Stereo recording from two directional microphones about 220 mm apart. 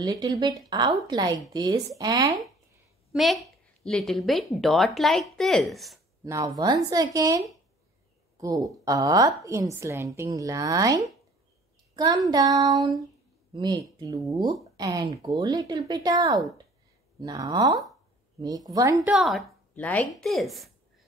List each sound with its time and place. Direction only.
0.0 s a woman's voice: 15° right (ahead or behind)
3.1 s a woman's voice: centre (ahead or behind)
6.2 s a woman's voice: 15° right (ahead or behind)
8.6 s a woman's voice: 15° right (ahead or behind)
11.9 s a sound: 20° right (ahead or behind)
13.5 s a woman's voice: 20° right (ahead or behind)
19.1 s a woman's voice: centre (ahead or behind)